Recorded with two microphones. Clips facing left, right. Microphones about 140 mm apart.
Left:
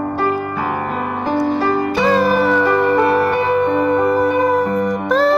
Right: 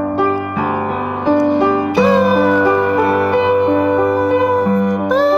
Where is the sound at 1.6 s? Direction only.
20° right (ahead or behind).